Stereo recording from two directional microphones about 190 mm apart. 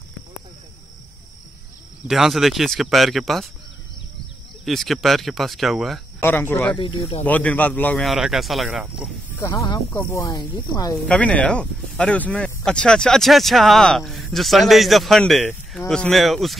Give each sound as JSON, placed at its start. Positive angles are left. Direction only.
{"t": 2.0, "sound": "speech", "side_deg": 0}
{"t": 4.6, "sound": "speech", "side_deg": 0}
{"t": 6.2, "sound": "speech", "side_deg": 10}
{"t": 6.8, "sound": "speech", "side_deg": 25}
{"t": 7.2, "sound": "speech", "side_deg": 10}
{"t": 9.4, "sound": "speech", "side_deg": 15}
{"t": 11.1, "sound": "speech", "side_deg": 5}